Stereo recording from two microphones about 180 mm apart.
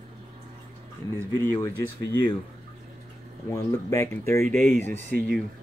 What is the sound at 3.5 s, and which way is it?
Speech, 15° left (ahead or behind).